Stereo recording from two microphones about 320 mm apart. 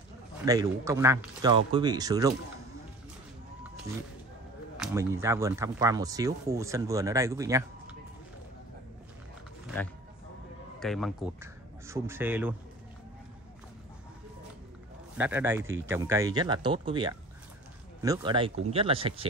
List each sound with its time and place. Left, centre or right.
0.5 s speech: centre
4.7 s speech: centre
10.8 s speech: centre
15.1 s speech: centre